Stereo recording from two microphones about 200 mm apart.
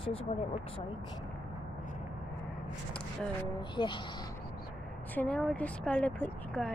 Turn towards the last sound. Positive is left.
turn(degrees=5)  # may be behind; listen again after turning